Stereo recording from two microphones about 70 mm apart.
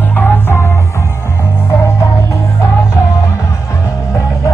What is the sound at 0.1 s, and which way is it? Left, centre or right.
Music, left.